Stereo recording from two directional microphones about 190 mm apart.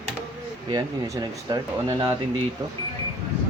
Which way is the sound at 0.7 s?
20° right (ahead or behind).